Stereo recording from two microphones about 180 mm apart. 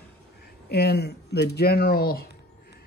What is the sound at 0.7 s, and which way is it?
Speech, 65° left (ahead or behind).